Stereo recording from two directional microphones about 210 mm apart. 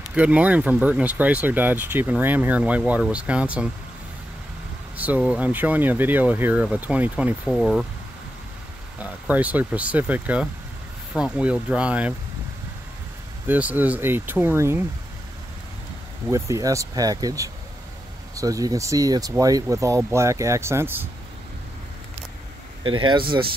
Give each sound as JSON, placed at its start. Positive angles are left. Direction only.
{"t": 0.1, "sound": "speech", "side_deg": -5}
{"t": 4.9, "sound": "speech", "side_deg": -5}
{"t": 9.0, "sound": "speech", "side_deg": -5}
{"t": 13.5, "sound": "speech", "side_deg": -5}
{"t": 16.3, "sound": "speech", "side_deg": -15}
{"t": 22.8, "sound": "speech", "side_deg": -25}